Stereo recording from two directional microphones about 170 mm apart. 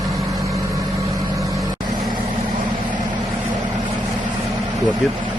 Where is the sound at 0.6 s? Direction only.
20° right (ahead or behind).